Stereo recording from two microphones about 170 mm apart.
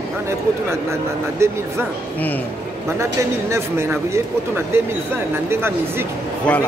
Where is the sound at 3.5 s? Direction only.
15° right (ahead or behind).